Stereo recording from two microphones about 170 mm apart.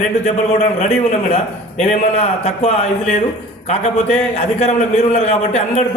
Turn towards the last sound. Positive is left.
turn(degrees=40)  # may be behind; listen again after turning